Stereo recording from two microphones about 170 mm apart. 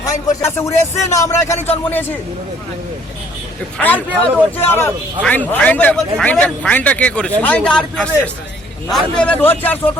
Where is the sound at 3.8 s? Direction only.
10° left (ahead or behind).